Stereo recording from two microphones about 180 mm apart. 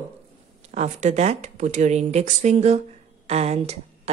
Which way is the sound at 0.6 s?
40° right (ahead or behind).